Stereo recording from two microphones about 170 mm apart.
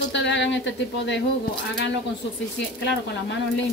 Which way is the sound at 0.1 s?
90° left.